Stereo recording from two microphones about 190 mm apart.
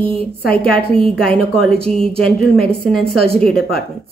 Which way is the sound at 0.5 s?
5° left (ahead or behind).